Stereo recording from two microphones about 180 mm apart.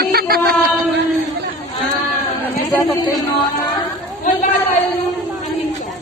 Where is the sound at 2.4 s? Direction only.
15° left (ahead or behind).